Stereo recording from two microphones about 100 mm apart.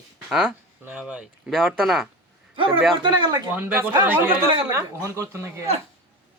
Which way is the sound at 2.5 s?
65° right (ahead or behind).